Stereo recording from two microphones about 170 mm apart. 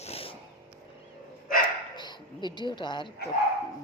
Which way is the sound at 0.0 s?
35° left (ahead or behind).